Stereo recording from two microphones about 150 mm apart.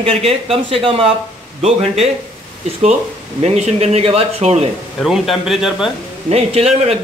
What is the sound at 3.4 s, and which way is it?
Speech, 45° right (ahead or behind).